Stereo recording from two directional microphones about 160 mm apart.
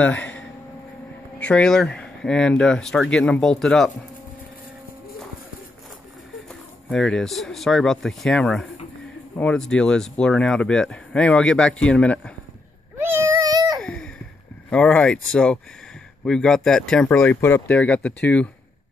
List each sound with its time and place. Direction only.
0.0 s a sound: 10° left (ahead or behind)
1.4 s speech: 5° left (ahead or behind)
6.9 s speech: 5° left (ahead or behind)
13.0 s meow: 20° right (ahead or behind)
13.7 s sigh: 5° left (ahead or behind)
14.7 s speech: 5° left (ahead or behind)